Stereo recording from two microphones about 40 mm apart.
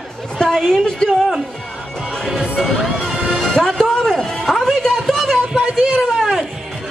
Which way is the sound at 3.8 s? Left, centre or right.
Centre.